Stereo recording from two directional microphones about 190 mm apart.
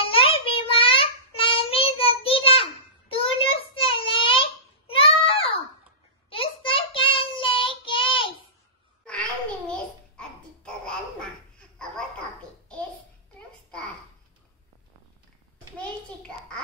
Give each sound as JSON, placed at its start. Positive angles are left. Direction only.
{"t": 0.0, "sound": "child singing", "side_deg": 30}
{"t": 9.7, "sound": "babbling", "side_deg": 5}